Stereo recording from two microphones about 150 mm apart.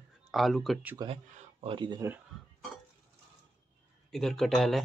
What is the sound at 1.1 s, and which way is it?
Speech, 40° right (ahead or behind).